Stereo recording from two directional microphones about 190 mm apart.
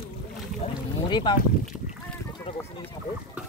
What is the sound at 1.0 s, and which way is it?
Speech, 25° left (ahead or behind).